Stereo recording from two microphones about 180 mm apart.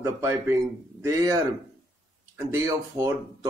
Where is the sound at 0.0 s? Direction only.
15° right (ahead or behind).